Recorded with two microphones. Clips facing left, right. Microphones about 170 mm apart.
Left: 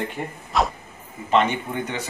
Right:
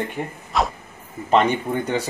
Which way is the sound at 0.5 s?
Centre (ahead or behind).